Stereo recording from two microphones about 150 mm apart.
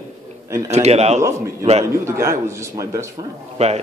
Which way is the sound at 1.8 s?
20° right (ahead or behind).